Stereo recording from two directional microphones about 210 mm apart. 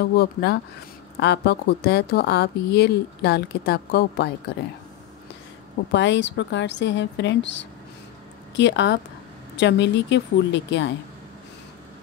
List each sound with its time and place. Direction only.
0.0 s a woman's voice: 50° left (ahead or behind)
5.9 s a woman's voice: 55° left (ahead or behind)